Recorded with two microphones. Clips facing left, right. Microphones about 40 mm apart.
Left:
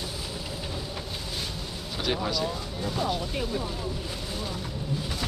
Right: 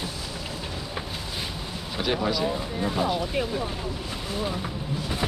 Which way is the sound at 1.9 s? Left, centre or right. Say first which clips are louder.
Right 3 dB; centre.